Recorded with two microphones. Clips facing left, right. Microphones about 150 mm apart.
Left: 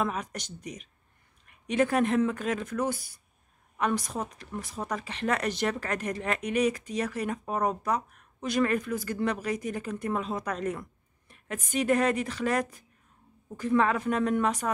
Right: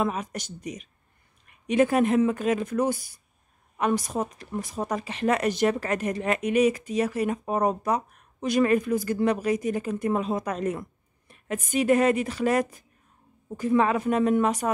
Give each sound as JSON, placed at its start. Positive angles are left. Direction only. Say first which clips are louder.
{"t": 0.0, "sound": "a woman's voice", "louder": "right 3 dB", "side_deg": -5}
{"t": 4.4, "sound": "a woman's voice", "louder": "right 5 dB", "side_deg": -15}
{"t": 4.7, "sound": "speech", "louder": "right 4 dB", "side_deg": -25}
{"t": 5.0, "sound": "a woman's voice", "louder": "right 5 dB", "side_deg": -10}